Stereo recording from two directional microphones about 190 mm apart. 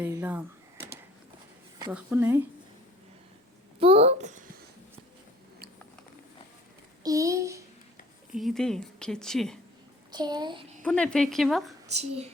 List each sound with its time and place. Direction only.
0.0 s speech: 10° right (ahead or behind)
1.9 s speech: 10° right (ahead or behind)
3.8 s speech: 30° right (ahead or behind)
7.0 s speech: 15° right (ahead or behind)
8.3 s speech: centre (ahead or behind)
10.1 s speech: 20° right (ahead or behind)
10.8 s speech: 5° left (ahead or behind)
11.9 s speech: 35° right (ahead or behind)